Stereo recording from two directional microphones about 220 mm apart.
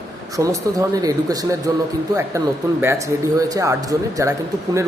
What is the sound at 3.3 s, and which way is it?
Speech, 15° right (ahead or behind).